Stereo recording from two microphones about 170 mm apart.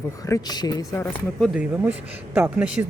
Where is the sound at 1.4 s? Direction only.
5° right (ahead or behind).